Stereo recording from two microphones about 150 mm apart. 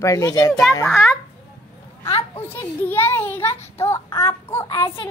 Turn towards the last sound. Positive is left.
turn(degrees=20)  # may be behind; listen again after turning